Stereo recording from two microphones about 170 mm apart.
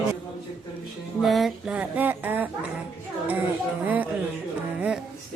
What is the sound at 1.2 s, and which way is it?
Speech, centre (ahead or behind).